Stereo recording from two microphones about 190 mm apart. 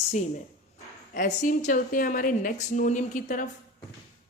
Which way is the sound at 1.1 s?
45° left (ahead or behind).